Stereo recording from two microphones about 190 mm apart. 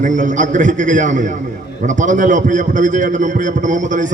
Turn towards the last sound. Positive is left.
turn(degrees=-40)  # may be behind; listen again after turning